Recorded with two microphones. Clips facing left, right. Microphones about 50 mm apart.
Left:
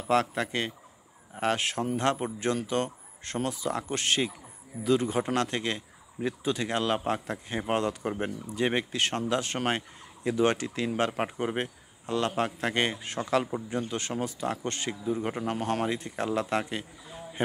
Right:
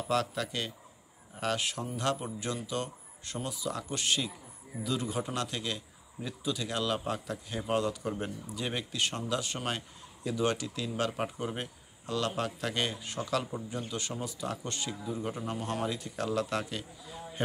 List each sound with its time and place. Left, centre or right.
0.1 s speech: left